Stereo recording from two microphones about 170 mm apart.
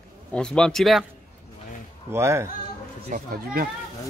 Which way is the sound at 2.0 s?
15° right (ahead or behind).